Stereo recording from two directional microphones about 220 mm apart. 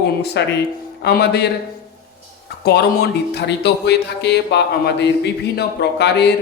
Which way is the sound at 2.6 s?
45° left (ahead or behind).